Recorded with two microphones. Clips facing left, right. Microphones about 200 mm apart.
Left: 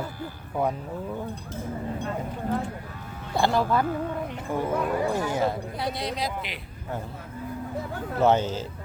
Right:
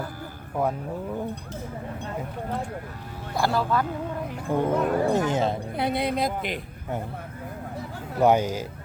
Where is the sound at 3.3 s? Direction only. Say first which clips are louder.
Left 1 dB; 25° left (ahead or behind).